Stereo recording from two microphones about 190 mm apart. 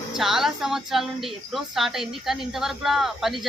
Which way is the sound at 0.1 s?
Centre (ahead or behind).